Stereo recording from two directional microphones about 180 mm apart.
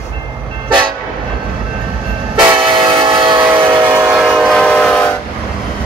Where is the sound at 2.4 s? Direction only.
25° right (ahead or behind).